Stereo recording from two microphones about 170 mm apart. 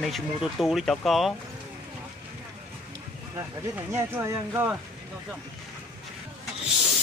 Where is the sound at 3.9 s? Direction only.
15° right (ahead or behind).